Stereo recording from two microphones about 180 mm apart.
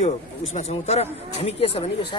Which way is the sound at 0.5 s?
35° left (ahead or behind).